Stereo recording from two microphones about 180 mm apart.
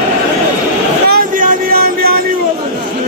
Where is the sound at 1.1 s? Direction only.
50° right (ahead or behind).